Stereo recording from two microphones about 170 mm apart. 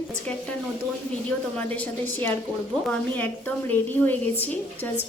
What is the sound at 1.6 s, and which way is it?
A woman's voice, 10° left (ahead or behind).